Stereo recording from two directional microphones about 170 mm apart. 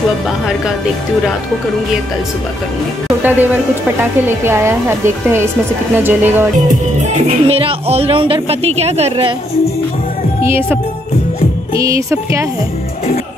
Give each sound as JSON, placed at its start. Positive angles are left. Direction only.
{"t": 3.2, "sound": "a woman's voice", "side_deg": -10}
{"t": 7.0, "sound": "speech", "side_deg": -40}
{"t": 10.4, "sound": "a woman's voice", "side_deg": -15}
{"t": 11.8, "sound": "a woman's voice", "side_deg": -20}